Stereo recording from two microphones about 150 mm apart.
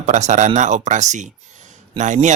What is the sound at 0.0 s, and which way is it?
A man's voice, 50° right (ahead or behind).